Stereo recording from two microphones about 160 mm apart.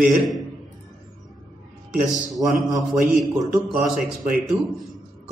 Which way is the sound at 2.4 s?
20° right (ahead or behind).